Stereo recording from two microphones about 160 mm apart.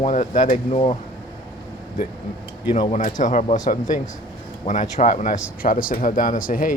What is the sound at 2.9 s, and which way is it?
Speech, 50° left (ahead or behind).